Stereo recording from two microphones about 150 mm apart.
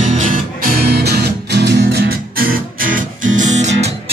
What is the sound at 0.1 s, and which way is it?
Music, 55° right (ahead or behind).